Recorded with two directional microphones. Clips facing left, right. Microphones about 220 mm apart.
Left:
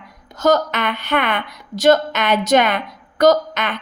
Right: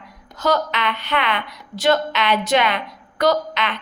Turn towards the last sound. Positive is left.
turn(degrees=45)  # may be behind; listen again after turning